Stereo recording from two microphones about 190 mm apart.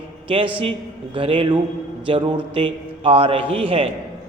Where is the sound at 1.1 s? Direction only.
30° right (ahead or behind).